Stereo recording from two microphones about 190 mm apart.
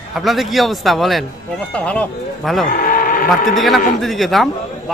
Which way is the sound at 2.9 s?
50° left (ahead or behind).